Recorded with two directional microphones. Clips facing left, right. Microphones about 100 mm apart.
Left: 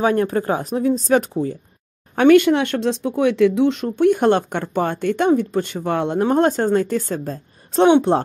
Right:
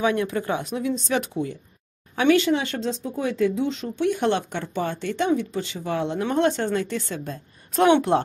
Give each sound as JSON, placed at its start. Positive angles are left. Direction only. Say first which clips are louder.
{"t": 0.0, "sound": "speech", "louder": "left 5 dB", "side_deg": 45}
{"t": 2.1, "sound": "speech", "louder": "left 7 dB", "side_deg": 55}
{"t": 6.2, "sound": "speech", "louder": "left 5 dB", "side_deg": 40}
{"t": 7.8, "sound": "speech", "louder": "left 4 dB", "side_deg": 25}